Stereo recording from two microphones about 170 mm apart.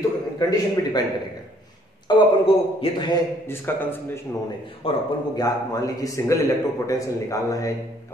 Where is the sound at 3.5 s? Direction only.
15° left (ahead or behind).